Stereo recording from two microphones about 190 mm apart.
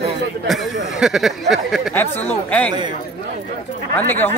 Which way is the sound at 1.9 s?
10° left (ahead or behind).